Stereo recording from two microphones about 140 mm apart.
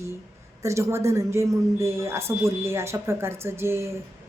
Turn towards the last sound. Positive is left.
turn(degrees=-20)  # may be behind; listen again after turning